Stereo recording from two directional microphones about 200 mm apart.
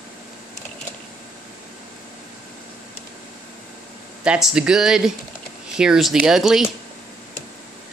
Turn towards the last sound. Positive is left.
turn(degrees=0)  # may be behind; listen again after turning